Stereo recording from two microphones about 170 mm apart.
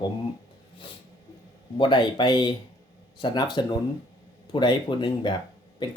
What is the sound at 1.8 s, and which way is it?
Speech, 30° left (ahead or behind).